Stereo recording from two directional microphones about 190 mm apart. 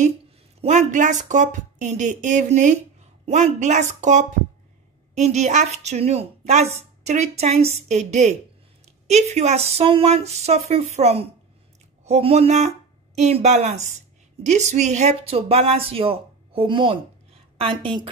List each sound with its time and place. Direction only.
0.6 s a woman's voice: 40° right (ahead or behind)